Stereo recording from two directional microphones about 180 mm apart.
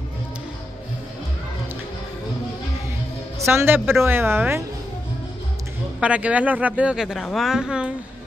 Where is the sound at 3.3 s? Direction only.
15° right (ahead or behind).